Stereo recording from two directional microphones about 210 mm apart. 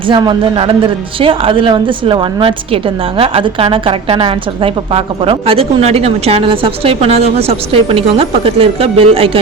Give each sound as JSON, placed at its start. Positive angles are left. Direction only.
{"t": 0.1, "sound": "speech", "side_deg": -20}